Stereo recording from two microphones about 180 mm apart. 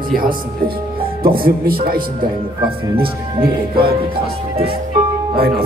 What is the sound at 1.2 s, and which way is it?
Speech, 55° right (ahead or behind).